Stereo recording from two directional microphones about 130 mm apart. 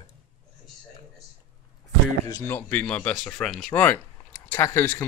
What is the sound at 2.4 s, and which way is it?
Speech, 15° left (ahead or behind).